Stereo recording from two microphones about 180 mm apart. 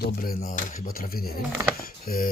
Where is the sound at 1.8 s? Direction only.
55° left (ahead or behind).